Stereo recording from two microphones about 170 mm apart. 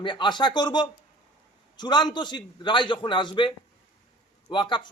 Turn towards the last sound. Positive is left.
turn(degrees=25)  # may be behind; listen again after turning